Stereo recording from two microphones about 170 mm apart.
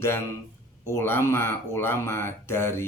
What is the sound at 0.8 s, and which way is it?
Speech, 15° left (ahead or behind).